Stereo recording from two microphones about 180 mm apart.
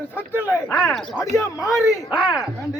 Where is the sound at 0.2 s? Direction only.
10° right (ahead or behind).